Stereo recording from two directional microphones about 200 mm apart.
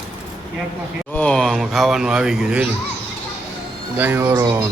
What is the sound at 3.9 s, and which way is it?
Speech, 10° right (ahead or behind).